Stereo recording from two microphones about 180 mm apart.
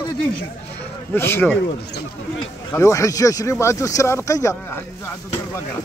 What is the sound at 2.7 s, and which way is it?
Speech, 15° left (ahead or behind).